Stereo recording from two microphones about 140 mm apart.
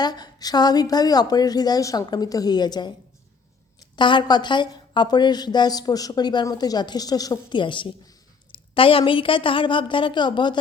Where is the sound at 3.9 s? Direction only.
35° left (ahead or behind).